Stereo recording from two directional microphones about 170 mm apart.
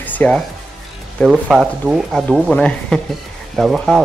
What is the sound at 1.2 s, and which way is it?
Speech, centre (ahead or behind).